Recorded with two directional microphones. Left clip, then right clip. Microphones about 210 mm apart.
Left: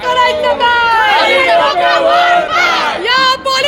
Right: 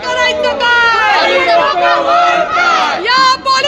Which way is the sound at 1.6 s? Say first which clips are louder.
Left 1 dB; 50° left (ahead or behind).